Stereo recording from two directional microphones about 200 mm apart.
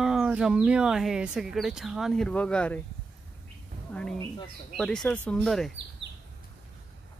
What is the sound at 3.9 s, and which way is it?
Speech, 5° left (ahead or behind).